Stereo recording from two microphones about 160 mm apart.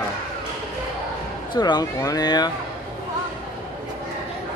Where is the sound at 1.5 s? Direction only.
25° left (ahead or behind).